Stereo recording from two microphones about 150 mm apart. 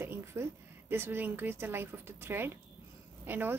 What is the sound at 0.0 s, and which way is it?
A woman's voice, 15° right (ahead or behind).